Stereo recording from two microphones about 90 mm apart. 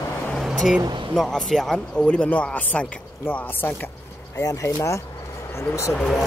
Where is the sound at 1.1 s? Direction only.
5° left (ahead or behind); by 3.9 s 25° left (ahead or behind).